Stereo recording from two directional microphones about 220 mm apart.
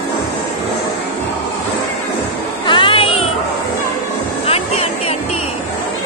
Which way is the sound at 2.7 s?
25° left (ahead or behind).